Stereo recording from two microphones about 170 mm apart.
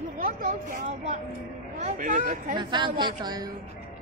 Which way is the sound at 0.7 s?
50° right (ahead or behind).